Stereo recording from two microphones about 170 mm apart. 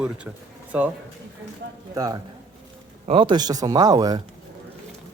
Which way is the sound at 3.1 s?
30° right (ahead or behind).